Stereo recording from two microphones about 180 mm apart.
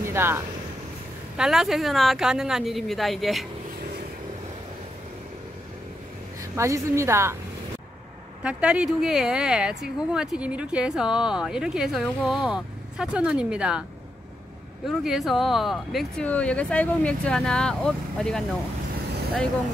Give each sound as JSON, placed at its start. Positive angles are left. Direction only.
{"t": 0.0, "sound": "a sound", "side_deg": -15}
{"t": 1.3, "sound": "speech", "side_deg": -5}
{"t": 6.5, "sound": "a woman's voice", "side_deg": -15}
{"t": 8.5, "sound": "speech", "side_deg": -5}
{"t": 14.9, "sound": "speech", "side_deg": 0}